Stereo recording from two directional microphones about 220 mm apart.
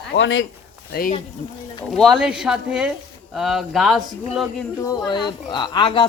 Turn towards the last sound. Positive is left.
turn(degrees=20)  # may be behind; listen again after turning